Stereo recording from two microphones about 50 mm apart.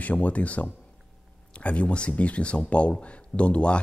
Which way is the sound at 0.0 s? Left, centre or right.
Left.